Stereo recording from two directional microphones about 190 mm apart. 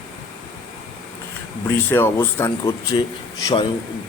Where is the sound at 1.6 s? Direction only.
10° left (ahead or behind).